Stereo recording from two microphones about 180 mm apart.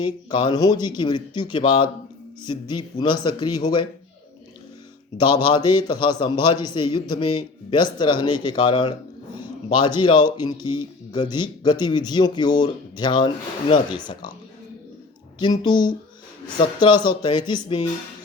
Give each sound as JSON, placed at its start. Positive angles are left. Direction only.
{"t": 0.0, "sound": "speech", "side_deg": 25}
{"t": 5.2, "sound": "speech", "side_deg": 25}
{"t": 15.4, "sound": "speech", "side_deg": 25}